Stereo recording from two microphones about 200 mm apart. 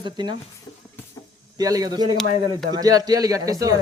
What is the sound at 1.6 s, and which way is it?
Speech, 20° right (ahead or behind).